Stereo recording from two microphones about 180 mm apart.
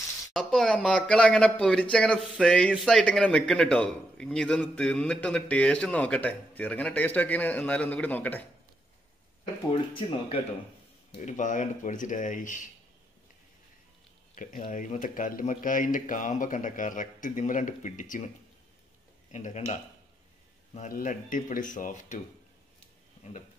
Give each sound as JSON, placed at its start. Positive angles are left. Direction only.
{"t": 0.3, "sound": "speech", "side_deg": 0}
{"t": 9.7, "sound": "speech", "side_deg": 30}
{"t": 11.1, "sound": "speech", "side_deg": 45}
{"t": 14.3, "sound": "speech", "side_deg": 45}
{"t": 19.3, "sound": "speech", "side_deg": 40}